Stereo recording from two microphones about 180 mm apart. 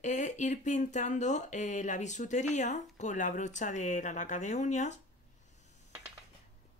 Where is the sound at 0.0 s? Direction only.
45° left (ahead or behind).